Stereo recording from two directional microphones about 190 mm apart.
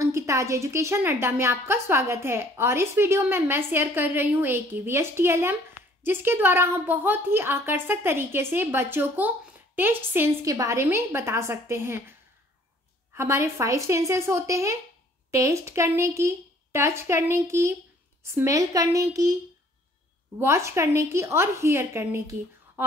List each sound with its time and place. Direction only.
0.0 s a woman's voice: 15° right (ahead or behind)
13.1 s a woman's voice: 15° right (ahead or behind)